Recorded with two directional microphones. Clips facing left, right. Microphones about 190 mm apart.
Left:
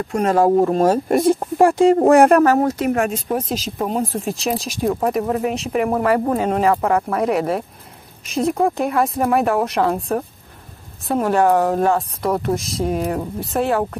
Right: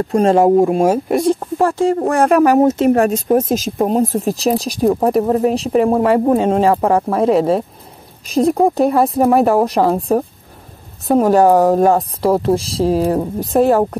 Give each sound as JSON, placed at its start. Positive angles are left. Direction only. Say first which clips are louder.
{"t": 0.1, "sound": "speech", "louder": "right 4 dB", "side_deg": -30}
{"t": 0.5, "sound": "speech", "louder": "right 3 dB", "side_deg": -10}
{"t": 1.4, "sound": "speech", "louder": "left 2 dB", "side_deg": 15}
{"t": 2.4, "sound": "speech", "louder": "right 5 dB", "side_deg": -20}
{"t": 2.9, "sound": "speech", "louder": "right 7 dB", "side_deg": -40}